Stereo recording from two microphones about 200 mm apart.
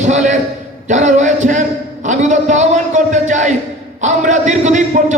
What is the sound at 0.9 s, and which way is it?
A man's voice, 35° right (ahead or behind).